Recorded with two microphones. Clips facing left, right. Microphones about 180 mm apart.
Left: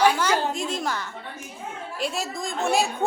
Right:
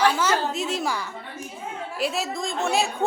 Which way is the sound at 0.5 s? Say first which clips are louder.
Right 1 dB; 5° right (ahead or behind).